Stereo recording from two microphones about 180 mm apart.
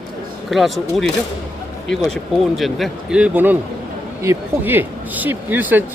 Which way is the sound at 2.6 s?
Centre (ahead or behind).